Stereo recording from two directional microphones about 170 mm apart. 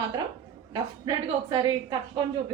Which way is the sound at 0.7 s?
25° right (ahead or behind).